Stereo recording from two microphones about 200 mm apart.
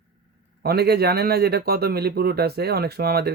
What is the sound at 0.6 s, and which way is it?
Speech, 50° right (ahead or behind).